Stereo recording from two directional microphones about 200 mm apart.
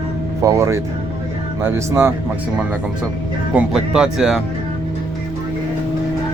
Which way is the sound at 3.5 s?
5° right (ahead or behind).